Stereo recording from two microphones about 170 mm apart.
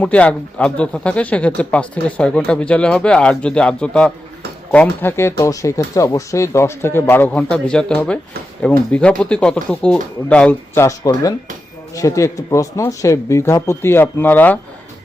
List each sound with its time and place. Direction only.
0.0 s speech: 5° left (ahead or behind)
10.8 s speech: 20° left (ahead or behind)